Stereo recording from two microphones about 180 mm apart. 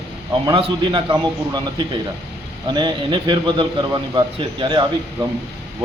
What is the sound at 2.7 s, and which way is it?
A man's voice, 25° right (ahead or behind).